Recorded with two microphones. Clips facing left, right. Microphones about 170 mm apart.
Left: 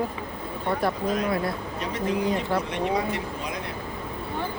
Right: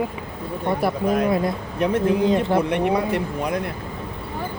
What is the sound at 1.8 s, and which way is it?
Speech, 55° right (ahead or behind).